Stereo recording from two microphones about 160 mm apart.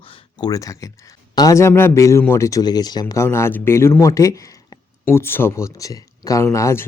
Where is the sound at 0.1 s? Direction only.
25° left (ahead or behind).